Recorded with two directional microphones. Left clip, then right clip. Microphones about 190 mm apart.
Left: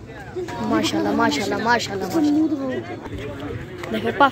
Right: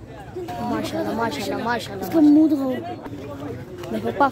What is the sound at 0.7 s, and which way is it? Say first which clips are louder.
Speech: left 5 dB; 5° left (ahead or behind).